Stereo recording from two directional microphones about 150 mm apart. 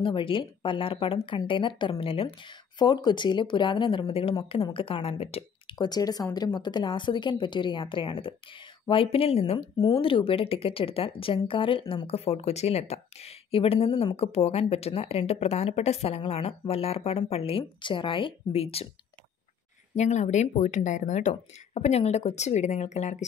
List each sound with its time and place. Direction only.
0.0 s speech: 35° left (ahead or behind)
12.1 s speech: 45° left (ahead or behind)
20.0 s speech: 50° left (ahead or behind)